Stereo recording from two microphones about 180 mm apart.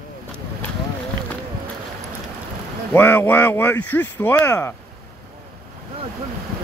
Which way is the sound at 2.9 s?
10° left (ahead or behind).